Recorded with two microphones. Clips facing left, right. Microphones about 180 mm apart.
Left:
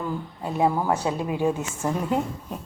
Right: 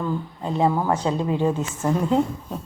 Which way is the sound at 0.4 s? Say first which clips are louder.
Right 1 dB; 10° left (ahead or behind).